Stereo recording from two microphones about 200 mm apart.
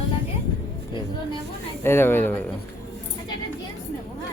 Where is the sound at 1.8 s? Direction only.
10° left (ahead or behind).